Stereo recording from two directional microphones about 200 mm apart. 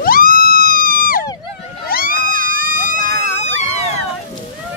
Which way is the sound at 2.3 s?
45° right (ahead or behind).